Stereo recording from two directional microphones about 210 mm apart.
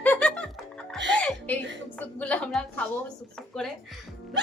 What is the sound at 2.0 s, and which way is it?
Speech, 5° left (ahead or behind).